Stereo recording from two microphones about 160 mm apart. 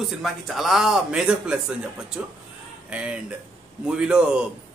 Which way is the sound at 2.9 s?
5° right (ahead or behind).